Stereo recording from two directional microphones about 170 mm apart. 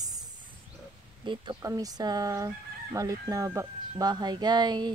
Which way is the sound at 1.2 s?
25° right (ahead or behind).